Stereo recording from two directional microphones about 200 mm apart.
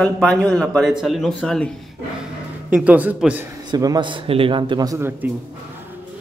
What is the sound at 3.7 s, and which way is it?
A man's voice, 20° right (ahead or behind).